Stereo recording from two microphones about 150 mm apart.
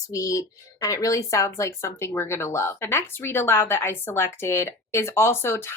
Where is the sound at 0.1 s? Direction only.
20° left (ahead or behind).